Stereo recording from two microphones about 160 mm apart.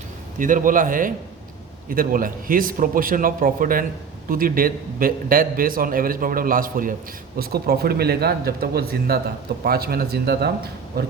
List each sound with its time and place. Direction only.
0.3 s a man's voice: 55° right (ahead or behind)
7.3 s a man's voice: 75° right (ahead or behind)